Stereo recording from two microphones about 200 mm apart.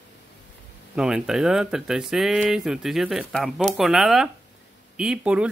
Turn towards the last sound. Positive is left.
turn(degrees=-5)  # may be behind; listen again after turning